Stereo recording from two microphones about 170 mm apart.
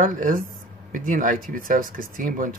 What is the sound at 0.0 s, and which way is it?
Speech, 50° right (ahead or behind).